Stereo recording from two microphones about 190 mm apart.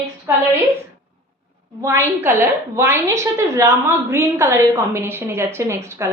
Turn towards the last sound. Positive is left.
turn(degrees=-15)  # may be behind; listen again after turning